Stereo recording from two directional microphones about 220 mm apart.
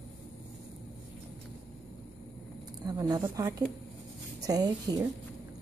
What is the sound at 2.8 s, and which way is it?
Speech, 15° right (ahead or behind).